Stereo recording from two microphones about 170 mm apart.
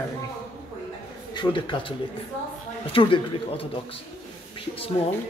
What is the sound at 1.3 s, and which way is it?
Speech, 30° left (ahead or behind).